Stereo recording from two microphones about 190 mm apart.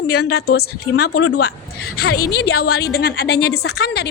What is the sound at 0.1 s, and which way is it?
A woman's voice, 55° left (ahead or behind).